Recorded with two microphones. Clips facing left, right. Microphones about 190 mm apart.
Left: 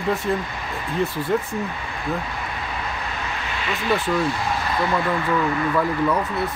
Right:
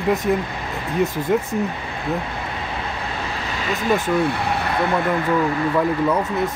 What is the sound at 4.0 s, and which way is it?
Speech, 60° right (ahead or behind).